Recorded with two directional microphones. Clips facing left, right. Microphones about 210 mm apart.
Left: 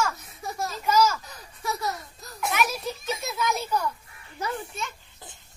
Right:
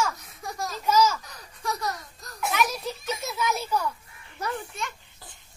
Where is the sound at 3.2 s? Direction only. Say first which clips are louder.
Even; 5° right (ahead or behind).